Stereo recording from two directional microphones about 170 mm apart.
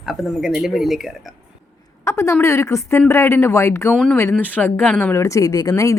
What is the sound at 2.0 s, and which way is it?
A woman's voice, 15° left (ahead or behind).